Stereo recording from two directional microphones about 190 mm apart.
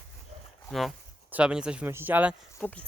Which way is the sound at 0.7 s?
Centre (ahead or behind).